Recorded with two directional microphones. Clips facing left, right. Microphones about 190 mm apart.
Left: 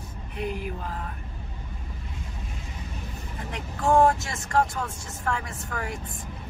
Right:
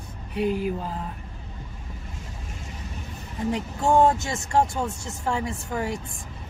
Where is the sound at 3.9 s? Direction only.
25° right (ahead or behind).